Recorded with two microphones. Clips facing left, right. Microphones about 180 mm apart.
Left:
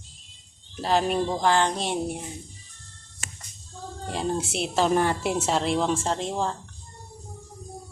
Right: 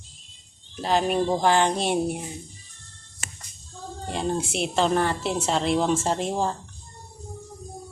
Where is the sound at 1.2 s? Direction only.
15° right (ahead or behind).